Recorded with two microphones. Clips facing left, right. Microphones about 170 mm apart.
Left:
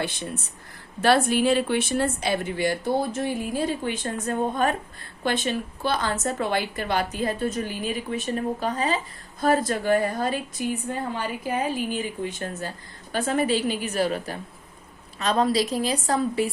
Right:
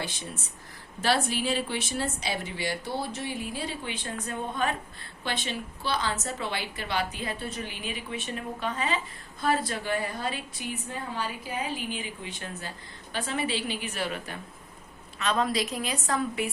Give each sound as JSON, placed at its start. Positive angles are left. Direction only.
{"t": 1.0, "sound": "a woman's voice", "side_deg": 55}